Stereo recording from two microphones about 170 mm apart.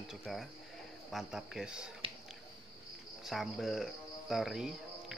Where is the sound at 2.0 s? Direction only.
30° right (ahead or behind).